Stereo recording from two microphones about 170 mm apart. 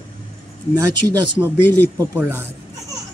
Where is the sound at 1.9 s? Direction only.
15° right (ahead or behind).